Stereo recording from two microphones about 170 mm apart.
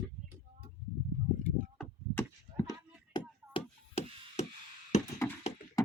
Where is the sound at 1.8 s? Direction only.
10° left (ahead or behind).